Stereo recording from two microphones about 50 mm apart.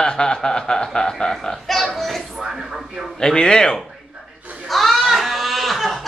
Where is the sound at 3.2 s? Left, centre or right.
Centre.